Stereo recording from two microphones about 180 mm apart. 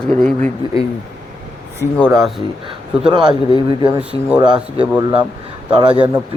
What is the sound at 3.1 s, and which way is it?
Speech, 25° right (ahead or behind).